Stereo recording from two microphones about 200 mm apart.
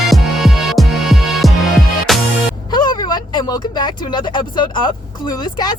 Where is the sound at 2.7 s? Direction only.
20° left (ahead or behind).